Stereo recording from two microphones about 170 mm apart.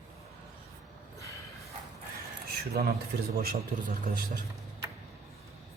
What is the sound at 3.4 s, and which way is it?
Speech, 60° right (ahead or behind).